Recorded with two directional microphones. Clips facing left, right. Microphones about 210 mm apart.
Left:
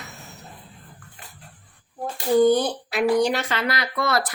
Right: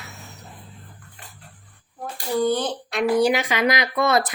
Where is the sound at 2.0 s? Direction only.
15° left (ahead or behind).